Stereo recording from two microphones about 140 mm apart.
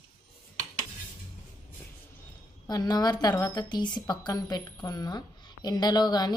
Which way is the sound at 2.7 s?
30° left (ahead or behind).